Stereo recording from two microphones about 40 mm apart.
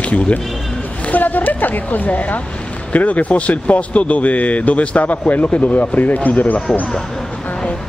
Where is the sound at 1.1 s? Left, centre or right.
Left.